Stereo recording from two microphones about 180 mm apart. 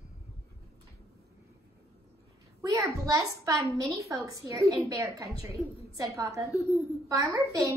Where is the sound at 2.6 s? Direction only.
20° right (ahead or behind).